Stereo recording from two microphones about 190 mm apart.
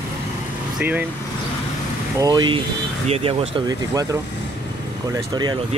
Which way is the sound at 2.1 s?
20° right (ahead or behind).